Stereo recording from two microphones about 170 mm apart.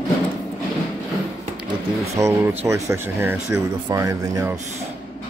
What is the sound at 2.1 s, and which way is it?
Speech, 15° right (ahead or behind).